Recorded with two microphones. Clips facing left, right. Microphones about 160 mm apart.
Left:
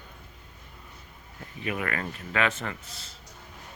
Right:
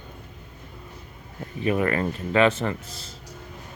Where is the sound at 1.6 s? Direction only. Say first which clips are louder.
Right 8 dB; 35° right (ahead or behind).